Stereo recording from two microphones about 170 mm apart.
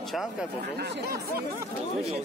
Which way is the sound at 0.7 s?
70° right (ahead or behind).